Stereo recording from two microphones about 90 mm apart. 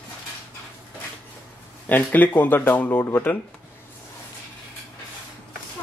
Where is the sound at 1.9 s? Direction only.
20° left (ahead or behind).